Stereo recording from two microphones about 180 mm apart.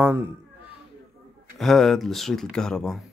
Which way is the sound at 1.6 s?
Centre (ahead or behind).